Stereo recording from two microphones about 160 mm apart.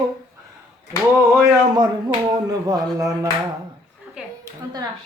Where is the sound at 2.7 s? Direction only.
20° right (ahead or behind).